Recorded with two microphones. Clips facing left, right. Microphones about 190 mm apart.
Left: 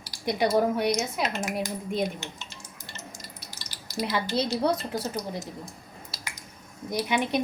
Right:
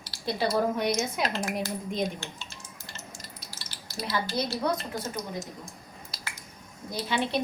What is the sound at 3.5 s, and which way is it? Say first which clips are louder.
Dishes: left 1 dB; 20° left (ahead or behind).